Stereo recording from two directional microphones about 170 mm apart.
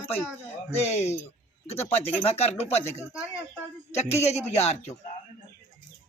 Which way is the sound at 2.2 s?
40° left (ahead or behind).